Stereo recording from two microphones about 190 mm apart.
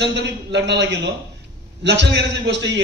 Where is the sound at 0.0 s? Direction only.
65° right (ahead or behind).